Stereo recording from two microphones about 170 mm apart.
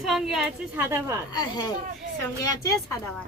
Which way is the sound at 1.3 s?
25° left (ahead or behind).